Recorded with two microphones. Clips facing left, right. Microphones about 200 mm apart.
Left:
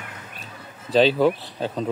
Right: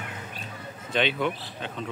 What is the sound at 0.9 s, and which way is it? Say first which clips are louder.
Speech: left 9 dB; 35° left (ahead or behind).